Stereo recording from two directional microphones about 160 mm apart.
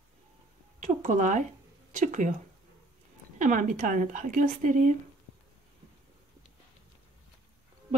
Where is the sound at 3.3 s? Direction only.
55° right (ahead or behind).